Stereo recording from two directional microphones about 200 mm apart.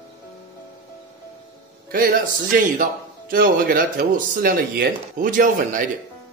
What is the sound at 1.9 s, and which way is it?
A man's voice, 45° right (ahead or behind).